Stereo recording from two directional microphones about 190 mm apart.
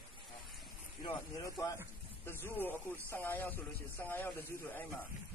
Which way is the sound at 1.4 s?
15° left (ahead or behind).